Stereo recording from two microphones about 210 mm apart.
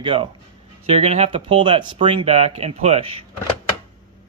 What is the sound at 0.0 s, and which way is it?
Speech, 25° right (ahead or behind).